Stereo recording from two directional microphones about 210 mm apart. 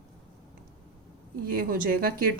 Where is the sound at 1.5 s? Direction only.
45° right (ahead or behind).